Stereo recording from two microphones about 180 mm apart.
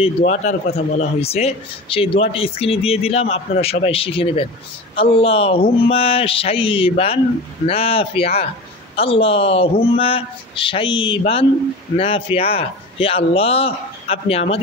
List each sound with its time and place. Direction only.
0.0 s speech: 40° left (ahead or behind)